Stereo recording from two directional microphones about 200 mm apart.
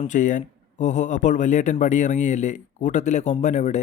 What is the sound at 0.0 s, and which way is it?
A man's voice, 40° left (ahead or behind).